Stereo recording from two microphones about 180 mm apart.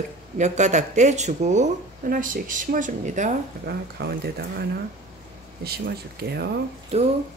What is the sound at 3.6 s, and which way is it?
Speech, 60° right (ahead or behind).